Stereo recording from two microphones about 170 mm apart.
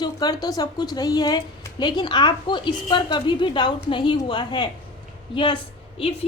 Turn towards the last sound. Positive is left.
turn(degrees=35)  # may be behind; listen again after turning